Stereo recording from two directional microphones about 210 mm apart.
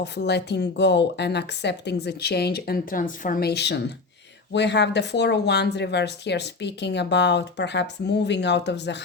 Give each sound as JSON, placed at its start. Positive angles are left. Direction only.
{"t": 0.0, "sound": "speech", "side_deg": 55}